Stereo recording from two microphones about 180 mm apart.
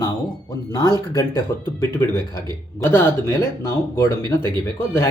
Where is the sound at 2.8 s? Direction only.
20° left (ahead or behind).